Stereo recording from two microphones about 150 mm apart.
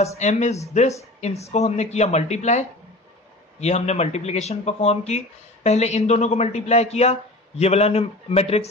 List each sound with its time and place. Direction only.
0.2 s speech: 50° left (ahead or behind)